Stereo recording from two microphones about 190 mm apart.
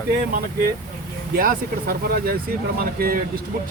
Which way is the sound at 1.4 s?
50° right (ahead or behind).